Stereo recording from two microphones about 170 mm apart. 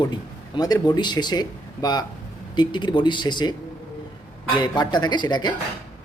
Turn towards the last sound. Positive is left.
turn(degrees=25)  # may be behind; listen again after turning